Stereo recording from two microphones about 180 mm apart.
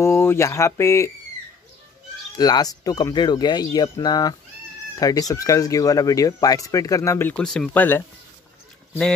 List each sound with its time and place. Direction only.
0.0 s speech: 15° left (ahead or behind)
2.3 s speech: 20° left (ahead or behind)